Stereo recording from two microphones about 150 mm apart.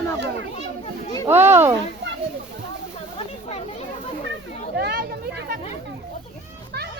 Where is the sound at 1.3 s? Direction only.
15° right (ahead or behind).